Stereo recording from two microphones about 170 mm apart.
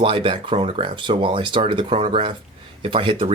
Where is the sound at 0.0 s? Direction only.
30° right (ahead or behind).